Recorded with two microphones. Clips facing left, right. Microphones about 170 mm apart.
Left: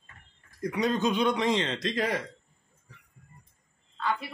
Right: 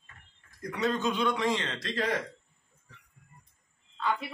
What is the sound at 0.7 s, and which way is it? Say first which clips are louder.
A man's voice: left 2 dB; 15° left (ahead or behind).